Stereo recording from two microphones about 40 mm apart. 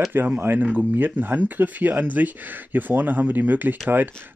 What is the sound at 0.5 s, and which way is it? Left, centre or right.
Speech, right.